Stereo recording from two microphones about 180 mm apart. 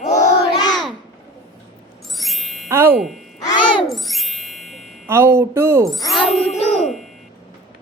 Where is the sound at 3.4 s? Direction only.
25° left (ahead or behind).